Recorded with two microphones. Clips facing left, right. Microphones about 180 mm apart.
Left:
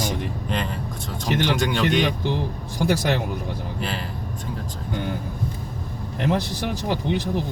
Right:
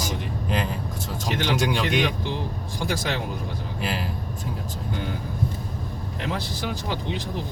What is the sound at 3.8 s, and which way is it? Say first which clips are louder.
Speech: right 2 dB; 5° right (ahead or behind).